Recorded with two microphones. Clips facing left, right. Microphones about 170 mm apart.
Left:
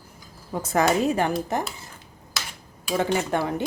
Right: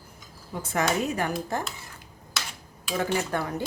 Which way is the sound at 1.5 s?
20° left (ahead or behind).